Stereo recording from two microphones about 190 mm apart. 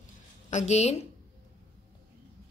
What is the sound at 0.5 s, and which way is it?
Speech, 35° left (ahead or behind).